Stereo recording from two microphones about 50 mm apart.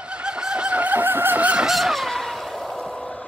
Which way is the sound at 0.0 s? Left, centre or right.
Right.